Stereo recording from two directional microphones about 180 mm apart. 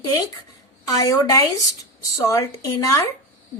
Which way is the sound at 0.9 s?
20° left (ahead or behind).